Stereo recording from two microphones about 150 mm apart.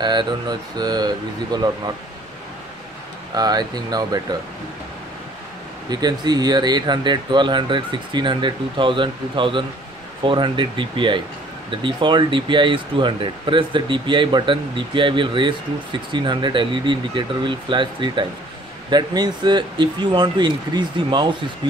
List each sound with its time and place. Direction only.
0.0 s speech: 30° right (ahead or behind)
3.3 s speech: 25° right (ahead or behind)
5.9 s speech: 25° right (ahead or behind)